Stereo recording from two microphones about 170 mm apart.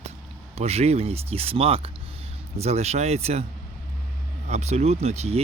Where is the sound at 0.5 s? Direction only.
40° right (ahead or behind).